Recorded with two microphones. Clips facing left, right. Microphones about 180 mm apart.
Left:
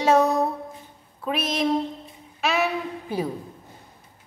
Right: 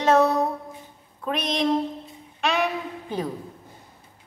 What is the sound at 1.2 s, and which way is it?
Speech, 5° left (ahead or behind).